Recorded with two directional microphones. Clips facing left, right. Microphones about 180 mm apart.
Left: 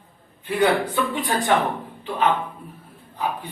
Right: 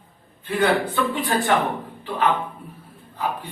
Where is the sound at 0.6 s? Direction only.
15° left (ahead or behind).